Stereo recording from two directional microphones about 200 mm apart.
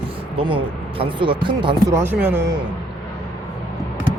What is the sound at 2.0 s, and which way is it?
Speech, 10° right (ahead or behind).